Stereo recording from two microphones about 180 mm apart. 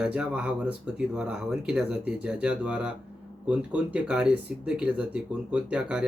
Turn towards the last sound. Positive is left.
turn(degrees=-5)  # may be behind; listen again after turning